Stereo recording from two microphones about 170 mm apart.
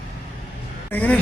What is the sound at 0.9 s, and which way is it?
Speech, 10° left (ahead or behind).